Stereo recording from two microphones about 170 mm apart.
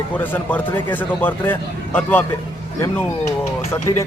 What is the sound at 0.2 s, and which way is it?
A man's voice, 10° left (ahead or behind).